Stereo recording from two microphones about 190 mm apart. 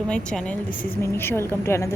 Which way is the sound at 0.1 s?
5° left (ahead or behind).